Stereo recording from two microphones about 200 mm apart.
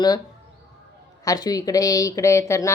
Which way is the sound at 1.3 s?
20° left (ahead or behind).